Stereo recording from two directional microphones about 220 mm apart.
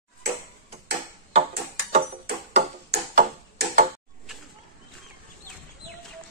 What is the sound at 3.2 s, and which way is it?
Tick-tock, 35° right (ahead or behind).